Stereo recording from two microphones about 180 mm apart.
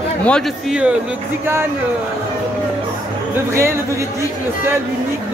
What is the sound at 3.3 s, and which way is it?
Speech, 15° right (ahead or behind).